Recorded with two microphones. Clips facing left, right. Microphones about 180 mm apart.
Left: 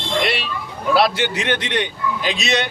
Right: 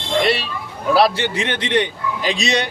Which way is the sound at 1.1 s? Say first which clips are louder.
Left 1 dB; 30° right (ahead or behind).